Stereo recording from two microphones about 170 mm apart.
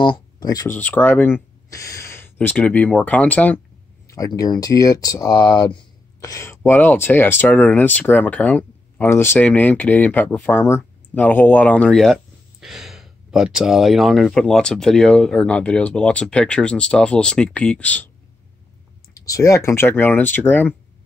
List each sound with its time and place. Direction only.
0.0 s speech: 25° left (ahead or behind); by 3.6 s 5° left (ahead or behind)
4.1 s speech: 20° left (ahead or behind)
19.1 s speech: 20° left (ahead or behind)